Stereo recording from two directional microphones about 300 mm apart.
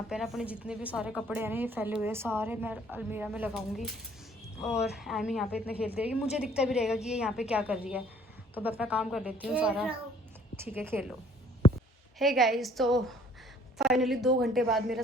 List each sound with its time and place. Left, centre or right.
0.1 s a woman's voice: centre
11.6 s a sound: centre
12.2 s a woman's voice: centre